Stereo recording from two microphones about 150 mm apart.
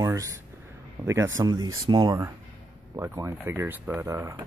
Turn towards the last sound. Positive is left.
turn(degrees=-20)  # may be behind; listen again after turning